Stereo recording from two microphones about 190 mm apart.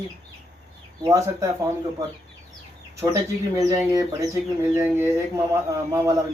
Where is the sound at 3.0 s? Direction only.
15° right (ahead or behind).